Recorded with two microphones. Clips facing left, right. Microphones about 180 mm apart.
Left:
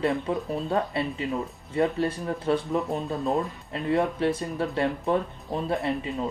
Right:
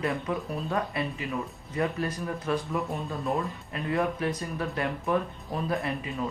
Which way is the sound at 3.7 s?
30° left (ahead or behind).